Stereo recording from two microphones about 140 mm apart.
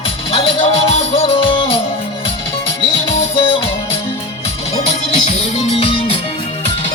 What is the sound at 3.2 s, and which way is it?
Music, 45° left (ahead or behind).